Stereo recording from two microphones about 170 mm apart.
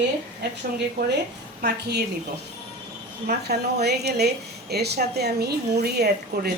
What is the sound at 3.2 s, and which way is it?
Speech, 70° right (ahead or behind).